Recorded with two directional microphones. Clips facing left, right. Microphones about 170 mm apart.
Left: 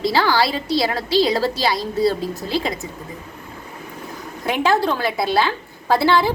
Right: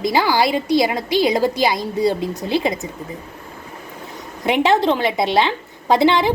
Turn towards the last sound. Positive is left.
turn(degrees=-20)  # may be behind; listen again after turning